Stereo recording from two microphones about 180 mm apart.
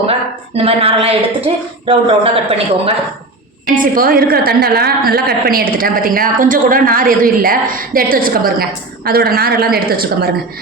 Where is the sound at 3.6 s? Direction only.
50° right (ahead or behind).